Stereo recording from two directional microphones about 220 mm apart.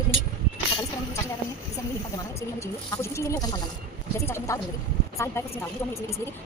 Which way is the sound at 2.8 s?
15° left (ahead or behind).